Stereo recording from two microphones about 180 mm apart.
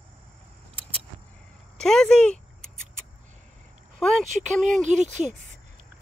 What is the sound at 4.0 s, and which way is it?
Speech, centre (ahead or behind).